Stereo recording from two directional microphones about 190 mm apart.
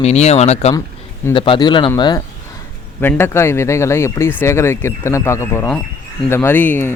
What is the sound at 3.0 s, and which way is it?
Speech, 10° left (ahead or behind).